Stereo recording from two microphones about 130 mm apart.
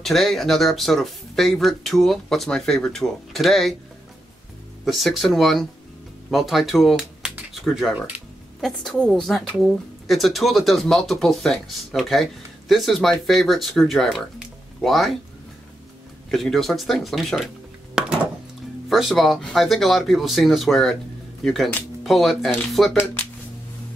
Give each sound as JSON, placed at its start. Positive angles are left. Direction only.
{"t": 0.0, "sound": "speech", "side_deg": 0}
{"t": 4.8, "sound": "speech", "side_deg": 0}
{"t": 16.3, "sound": "speech", "side_deg": 0}
{"t": 18.0, "sound": "dishes", "side_deg": -5}
{"t": 18.9, "sound": "speech", "side_deg": 0}
{"t": 22.0, "sound": "speech", "side_deg": 0}